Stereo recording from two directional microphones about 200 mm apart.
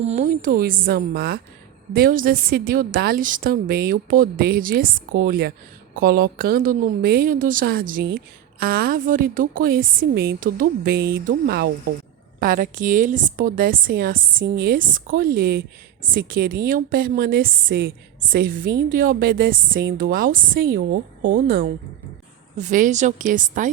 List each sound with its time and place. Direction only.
0.0 s a woman's voice: 35° right (ahead or behind)
22.7 s speech: 40° right (ahead or behind)